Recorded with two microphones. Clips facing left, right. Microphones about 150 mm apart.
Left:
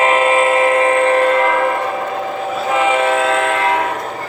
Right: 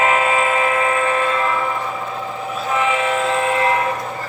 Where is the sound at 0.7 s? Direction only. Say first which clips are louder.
Left 6 dB; 60° left (ahead or behind); by 3.6 s 75° left (ahead or behind).